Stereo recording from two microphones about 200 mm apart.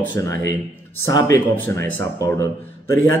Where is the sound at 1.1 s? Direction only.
15° left (ahead or behind).